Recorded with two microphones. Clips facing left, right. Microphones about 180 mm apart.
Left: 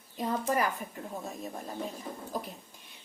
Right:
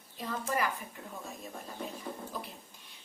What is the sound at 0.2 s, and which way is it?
Speech, 45° left (ahead or behind).